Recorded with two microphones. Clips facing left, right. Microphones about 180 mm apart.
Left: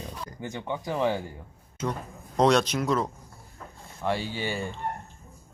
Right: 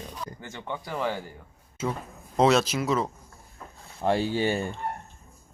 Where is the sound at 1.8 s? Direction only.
5° right (ahead or behind).